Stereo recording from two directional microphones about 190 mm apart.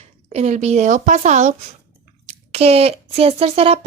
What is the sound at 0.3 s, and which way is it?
Speech, 35° right (ahead or behind).